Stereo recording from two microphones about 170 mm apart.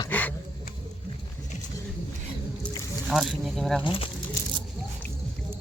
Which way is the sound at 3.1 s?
Centre (ahead or behind).